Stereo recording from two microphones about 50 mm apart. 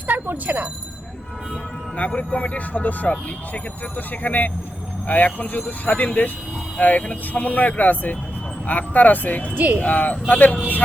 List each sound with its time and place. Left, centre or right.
0.1 s speech: right
2.0 s speech: left
9.6 s speech: right
9.8 s speech: left